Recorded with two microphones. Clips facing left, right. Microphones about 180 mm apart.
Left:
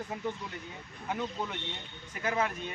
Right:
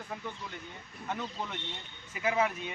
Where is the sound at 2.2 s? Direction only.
5° right (ahead or behind).